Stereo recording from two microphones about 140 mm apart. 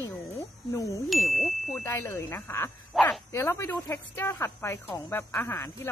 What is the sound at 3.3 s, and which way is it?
Speech, 15° left (ahead or behind).